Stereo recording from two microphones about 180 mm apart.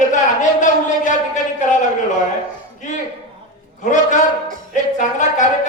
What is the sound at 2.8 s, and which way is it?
A man's voice, 45° left (ahead or behind).